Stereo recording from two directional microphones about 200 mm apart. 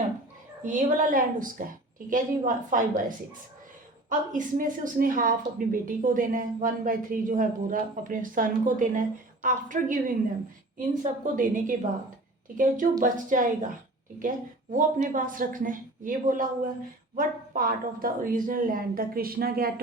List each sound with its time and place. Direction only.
0.6 s a woman's voice: 40° right (ahead or behind)
4.1 s a woman's voice: 40° right (ahead or behind)